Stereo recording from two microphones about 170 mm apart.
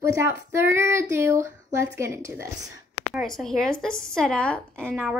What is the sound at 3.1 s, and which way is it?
A woman's voice, centre (ahead or behind).